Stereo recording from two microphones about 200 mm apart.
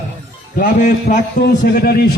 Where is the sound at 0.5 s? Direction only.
40° left (ahead or behind).